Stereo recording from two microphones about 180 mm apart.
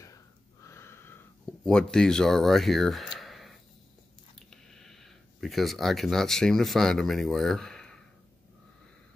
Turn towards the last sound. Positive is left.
turn(degrees=5)  # may be behind; listen again after turning